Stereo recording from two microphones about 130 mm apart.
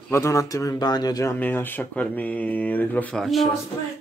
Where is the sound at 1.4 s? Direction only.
15° left (ahead or behind).